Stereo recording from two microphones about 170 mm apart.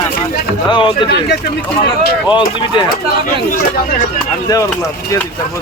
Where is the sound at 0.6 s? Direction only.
25° left (ahead or behind).